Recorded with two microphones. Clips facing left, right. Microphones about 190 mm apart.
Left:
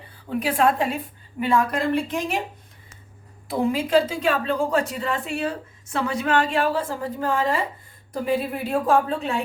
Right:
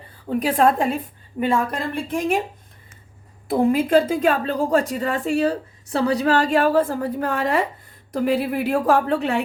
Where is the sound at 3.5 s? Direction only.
55° right (ahead or behind).